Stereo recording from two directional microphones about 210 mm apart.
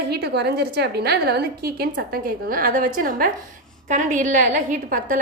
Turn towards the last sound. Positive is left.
turn(degrees=-40)  # may be behind; listen again after turning